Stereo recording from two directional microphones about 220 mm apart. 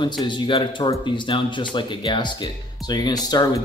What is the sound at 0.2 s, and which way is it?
Speech, 20° left (ahead or behind).